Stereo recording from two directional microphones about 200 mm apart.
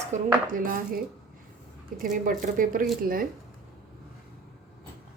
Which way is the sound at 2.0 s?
45° right (ahead or behind).